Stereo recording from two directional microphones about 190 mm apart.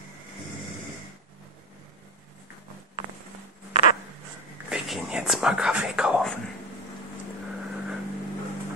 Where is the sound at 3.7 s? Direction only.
45° left (ahead or behind).